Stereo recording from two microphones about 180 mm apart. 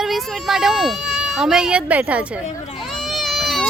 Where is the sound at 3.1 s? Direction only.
Centre (ahead or behind).